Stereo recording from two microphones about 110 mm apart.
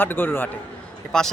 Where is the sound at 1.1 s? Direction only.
5° left (ahead or behind).